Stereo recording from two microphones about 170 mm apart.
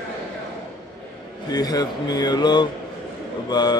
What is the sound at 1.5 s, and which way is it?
Speech, 25° left (ahead or behind).